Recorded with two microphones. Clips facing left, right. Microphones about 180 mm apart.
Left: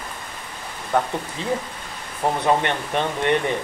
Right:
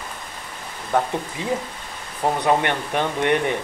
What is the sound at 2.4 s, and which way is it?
Speech, 15° right (ahead or behind).